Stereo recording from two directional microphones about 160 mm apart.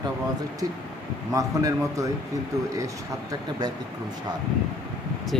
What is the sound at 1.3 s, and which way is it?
Speech, 20° right (ahead or behind).